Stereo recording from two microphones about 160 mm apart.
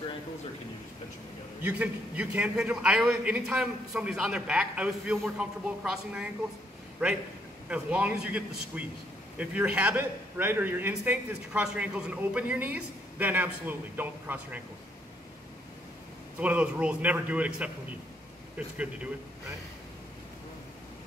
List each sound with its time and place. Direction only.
1.6 s a man's voice: 10° right (ahead or behind)
16.3 s a man's voice: 10° right (ahead or behind)